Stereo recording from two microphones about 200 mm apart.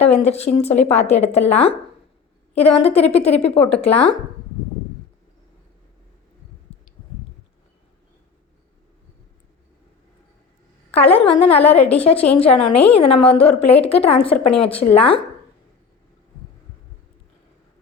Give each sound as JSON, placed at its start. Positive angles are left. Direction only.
{"t": 0.2, "sound": "speech", "side_deg": 30}
{"t": 6.7, "sound": "a sound", "side_deg": 30}
{"t": 10.9, "sound": "a woman's voice", "side_deg": 30}